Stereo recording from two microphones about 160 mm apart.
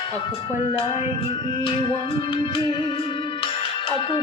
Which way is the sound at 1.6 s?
30° left (ahead or behind).